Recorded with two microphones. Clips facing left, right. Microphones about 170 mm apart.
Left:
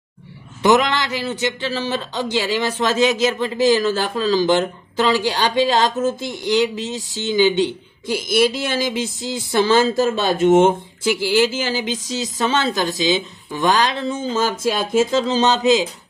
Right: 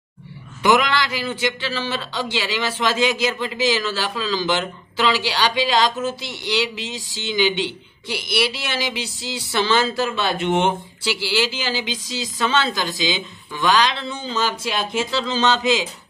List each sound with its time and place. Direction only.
1.3 s speech: 40° left (ahead or behind)